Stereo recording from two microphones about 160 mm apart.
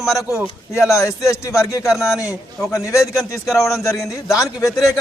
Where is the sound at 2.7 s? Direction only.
20° left (ahead or behind).